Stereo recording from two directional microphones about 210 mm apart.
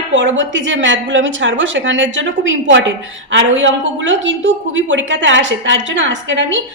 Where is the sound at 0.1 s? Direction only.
60° right (ahead or behind).